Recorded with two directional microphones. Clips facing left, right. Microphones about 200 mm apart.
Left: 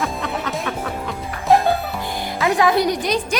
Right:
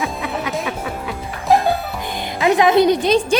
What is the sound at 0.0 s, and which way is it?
Music, 10° right (ahead or behind).